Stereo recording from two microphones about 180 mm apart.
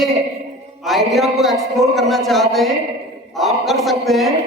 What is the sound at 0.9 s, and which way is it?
A man's voice, centre (ahead or behind).